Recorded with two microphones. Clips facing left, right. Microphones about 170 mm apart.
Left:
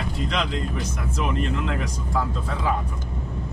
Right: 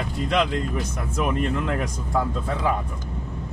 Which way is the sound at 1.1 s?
55° right (ahead or behind).